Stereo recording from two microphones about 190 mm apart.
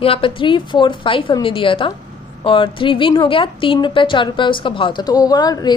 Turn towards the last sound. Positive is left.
turn(degrees=20)  # may be behind; listen again after turning